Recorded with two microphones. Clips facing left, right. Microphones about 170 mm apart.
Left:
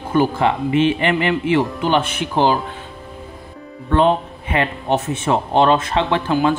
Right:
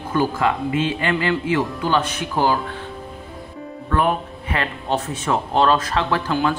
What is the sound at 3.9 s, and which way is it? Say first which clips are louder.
Speech: left 5 dB; 25° left (ahead or behind).